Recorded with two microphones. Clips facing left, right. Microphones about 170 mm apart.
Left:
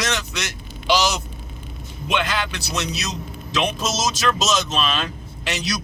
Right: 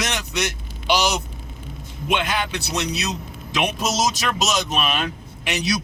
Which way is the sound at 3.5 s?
15° right (ahead or behind).